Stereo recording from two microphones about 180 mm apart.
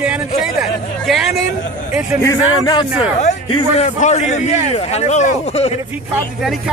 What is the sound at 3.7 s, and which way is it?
A man's voice, 35° left (ahead or behind).